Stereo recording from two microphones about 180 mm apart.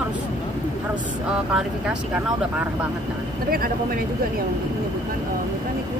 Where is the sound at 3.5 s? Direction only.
55° right (ahead or behind).